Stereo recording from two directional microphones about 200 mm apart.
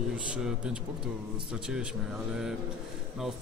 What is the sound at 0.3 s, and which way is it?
A man's voice, 5° right (ahead or behind).